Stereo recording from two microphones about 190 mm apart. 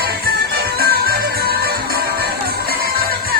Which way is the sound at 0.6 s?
55° right (ahead or behind).